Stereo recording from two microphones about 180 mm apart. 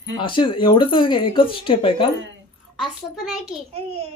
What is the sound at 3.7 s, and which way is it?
Speech, 35° right (ahead or behind).